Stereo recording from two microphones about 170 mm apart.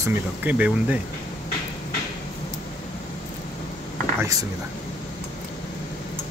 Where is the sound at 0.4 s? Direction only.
10° right (ahead or behind).